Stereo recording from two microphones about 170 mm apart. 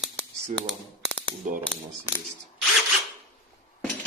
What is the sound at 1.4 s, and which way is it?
Speech, 45° right (ahead or behind).